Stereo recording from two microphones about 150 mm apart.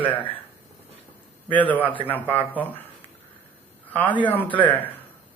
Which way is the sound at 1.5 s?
10° left (ahead or behind).